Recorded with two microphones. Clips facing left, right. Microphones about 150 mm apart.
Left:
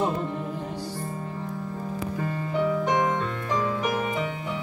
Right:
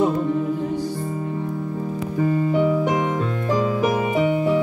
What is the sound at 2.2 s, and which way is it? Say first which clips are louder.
Music: right 8 dB; 10° right (ahead or behind).